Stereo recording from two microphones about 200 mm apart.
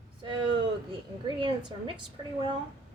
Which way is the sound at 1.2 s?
25° right (ahead or behind).